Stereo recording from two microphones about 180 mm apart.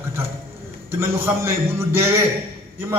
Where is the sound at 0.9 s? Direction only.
15° right (ahead or behind).